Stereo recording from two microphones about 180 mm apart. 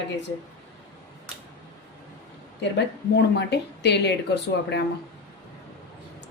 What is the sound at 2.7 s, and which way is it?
Speech, 70° left (ahead or behind).